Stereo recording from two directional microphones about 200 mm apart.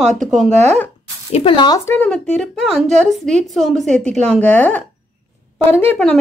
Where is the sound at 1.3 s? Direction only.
25° left (ahead or behind).